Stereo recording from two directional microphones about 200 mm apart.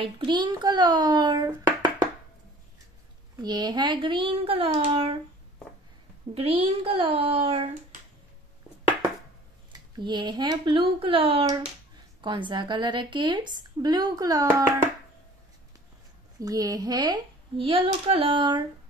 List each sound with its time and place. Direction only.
0.0 s a woman's voice: 25° right (ahead or behind)
3.3 s a woman's voice: 20° right (ahead or behind)
6.3 s a woman's voice: 30° right (ahead or behind)
9.7 s a woman's voice: 20° right (ahead or behind)
16.3 s a woman's voice: 20° right (ahead or behind)